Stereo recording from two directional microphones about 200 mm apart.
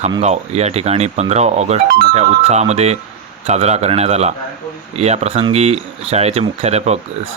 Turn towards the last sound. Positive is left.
turn(degrees=-35)  # may be behind; listen again after turning